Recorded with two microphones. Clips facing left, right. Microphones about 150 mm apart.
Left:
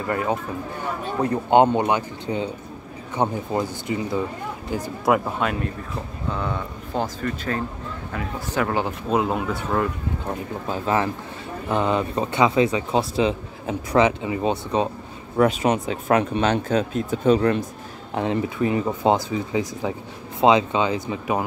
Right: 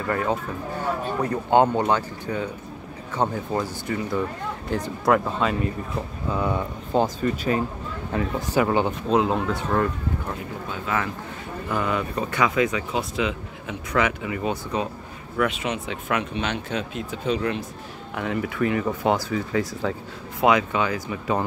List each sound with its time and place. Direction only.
0.0 s speech: 15° left (ahead or behind)
5.0 s speech: 5° left (ahead or behind)
6.3 s speech: 10° right (ahead or behind)
8.7 s speech: centre (ahead or behind)
10.2 s speech: 30° left (ahead or behind)
15.3 s speech: 40° left (ahead or behind)
18.1 s speech: 25° left (ahead or behind)